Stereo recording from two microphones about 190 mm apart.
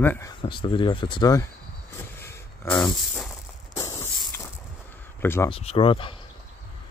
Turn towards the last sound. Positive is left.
turn(degrees=25)  # may be behind; listen again after turning